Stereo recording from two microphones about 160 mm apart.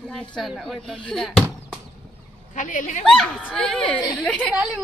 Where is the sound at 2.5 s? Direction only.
55° left (ahead or behind).